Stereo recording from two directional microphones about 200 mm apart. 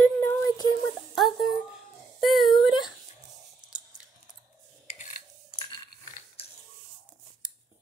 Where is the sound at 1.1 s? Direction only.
Centre (ahead or behind).